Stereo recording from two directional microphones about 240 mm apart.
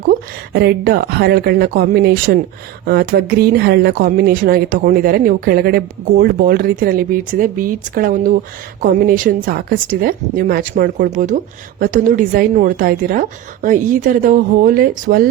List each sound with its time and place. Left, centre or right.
0.1 s speech: right